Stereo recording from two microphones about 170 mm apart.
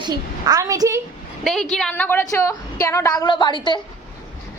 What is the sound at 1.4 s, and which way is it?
A woman's voice, 5° left (ahead or behind).